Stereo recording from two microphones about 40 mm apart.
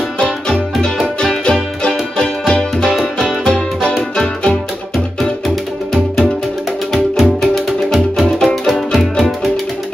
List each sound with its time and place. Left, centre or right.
0.2 s music: centre
6.9 s music: centre